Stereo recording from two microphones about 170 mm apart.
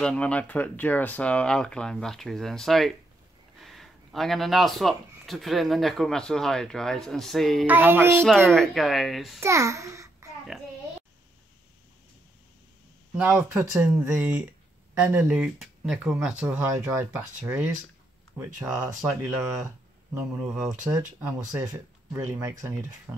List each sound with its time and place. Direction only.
0.0 s speech: 5° left (ahead or behind)
7.6 s speech: 10° right (ahead or behind)
8.5 s speech: centre (ahead or behind)
9.4 s a child's voice: 15° right (ahead or behind)
13.1 s speech: 10° right (ahead or behind)
20.4 s speech: centre (ahead or behind)